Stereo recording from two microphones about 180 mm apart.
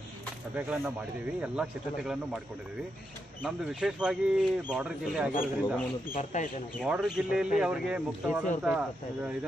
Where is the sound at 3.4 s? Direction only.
5° right (ahead or behind).